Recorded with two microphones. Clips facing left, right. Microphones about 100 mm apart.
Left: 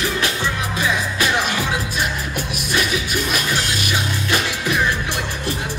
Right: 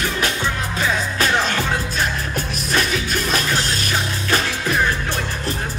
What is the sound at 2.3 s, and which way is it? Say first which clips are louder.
Music: right 1 dB; 40° right (ahead or behind).